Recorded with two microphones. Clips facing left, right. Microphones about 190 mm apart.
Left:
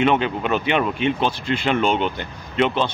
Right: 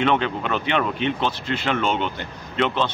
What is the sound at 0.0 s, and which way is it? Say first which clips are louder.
Speech: left 2 dB; 10° left (ahead or behind).